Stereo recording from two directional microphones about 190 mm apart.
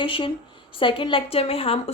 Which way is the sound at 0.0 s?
25° left (ahead or behind).